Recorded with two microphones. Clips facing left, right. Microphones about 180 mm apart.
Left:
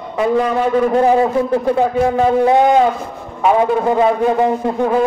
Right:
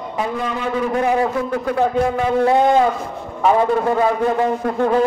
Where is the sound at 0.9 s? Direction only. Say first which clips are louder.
Left 3 dB; 30° left (ahead or behind).